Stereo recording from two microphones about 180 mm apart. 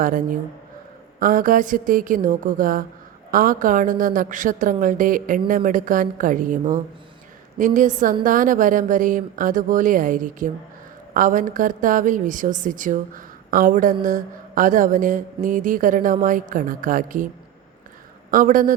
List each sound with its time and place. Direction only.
0.0 s a woman's voice: 50° right (ahead or behind)
18.3 s speech: 50° right (ahead or behind)